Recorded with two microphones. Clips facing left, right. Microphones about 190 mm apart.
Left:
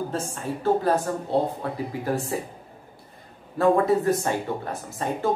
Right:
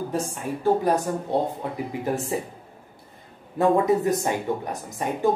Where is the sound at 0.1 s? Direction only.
15° right (ahead or behind).